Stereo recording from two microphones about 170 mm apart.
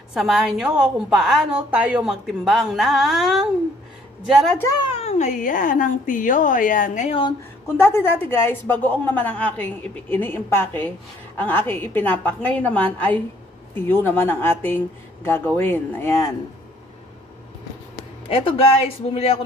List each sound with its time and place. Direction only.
0.1 s a woman's voice: centre (ahead or behind)
4.6 s a woman's voice: 20° left (ahead or behind)
4.9 s a woman's voice: 40° left (ahead or behind)
7.6 s a woman's voice: 15° left (ahead or behind)
18.3 s speech: 35° left (ahead or behind)